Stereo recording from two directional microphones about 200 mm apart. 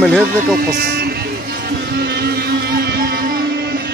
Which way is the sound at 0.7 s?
50° right (ahead or behind).